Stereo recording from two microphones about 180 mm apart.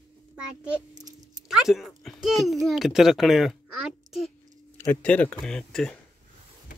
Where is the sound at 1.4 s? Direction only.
Centre (ahead or behind).